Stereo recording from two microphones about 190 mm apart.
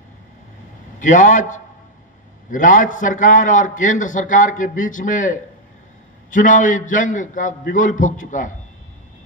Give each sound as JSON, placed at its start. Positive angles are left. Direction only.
{"t": 0.9, "sound": "a man's voice", "side_deg": 40}